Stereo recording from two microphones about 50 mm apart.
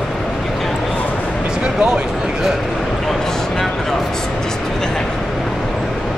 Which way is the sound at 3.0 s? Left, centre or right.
Centre.